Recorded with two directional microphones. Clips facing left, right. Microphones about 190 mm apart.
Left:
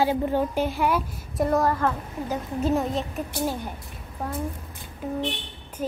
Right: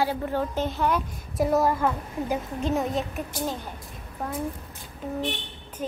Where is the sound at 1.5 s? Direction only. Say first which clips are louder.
Even; 10° right (ahead or behind).